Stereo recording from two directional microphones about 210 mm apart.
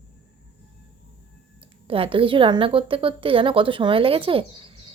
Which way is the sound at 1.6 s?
25° right (ahead or behind).